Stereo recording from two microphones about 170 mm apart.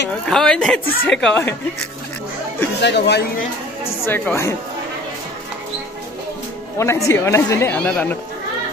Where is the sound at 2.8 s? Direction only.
90° left.